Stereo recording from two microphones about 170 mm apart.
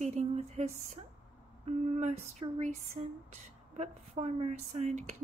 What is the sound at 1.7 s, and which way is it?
Speech, 40° right (ahead or behind).